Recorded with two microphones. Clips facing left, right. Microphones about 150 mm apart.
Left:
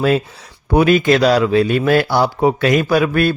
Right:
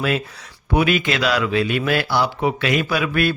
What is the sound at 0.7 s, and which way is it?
Speech, 40° left (ahead or behind).